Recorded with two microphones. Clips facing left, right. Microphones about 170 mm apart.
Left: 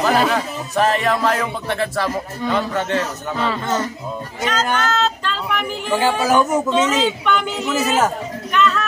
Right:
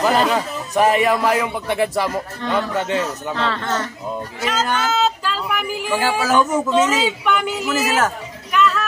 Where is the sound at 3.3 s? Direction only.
10° left (ahead or behind).